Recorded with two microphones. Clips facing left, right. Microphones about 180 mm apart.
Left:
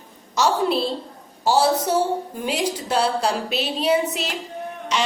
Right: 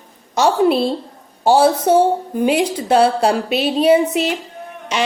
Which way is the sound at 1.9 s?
60° right (ahead or behind).